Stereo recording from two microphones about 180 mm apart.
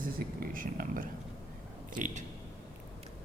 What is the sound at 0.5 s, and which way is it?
Speech, 50° right (ahead or behind).